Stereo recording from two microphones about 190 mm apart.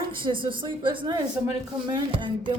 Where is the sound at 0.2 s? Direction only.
25° right (ahead or behind).